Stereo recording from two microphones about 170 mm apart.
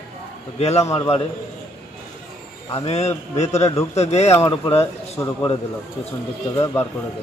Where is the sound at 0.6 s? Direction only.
40° left (ahead or behind).